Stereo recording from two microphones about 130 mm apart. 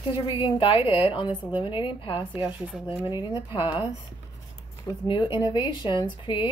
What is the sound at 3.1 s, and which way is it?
Speech, 35° left (ahead or behind).